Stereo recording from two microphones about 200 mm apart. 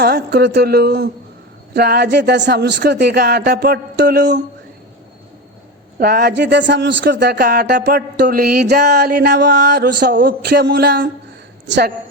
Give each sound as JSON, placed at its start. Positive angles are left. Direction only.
{"t": 0.0, "sound": "a man's voice", "side_deg": -55}
{"t": 6.0, "sound": "a man's voice", "side_deg": -50}